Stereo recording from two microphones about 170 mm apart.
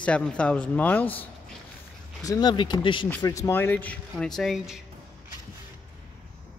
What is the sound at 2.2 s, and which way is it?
Speech, 25° left (ahead or behind).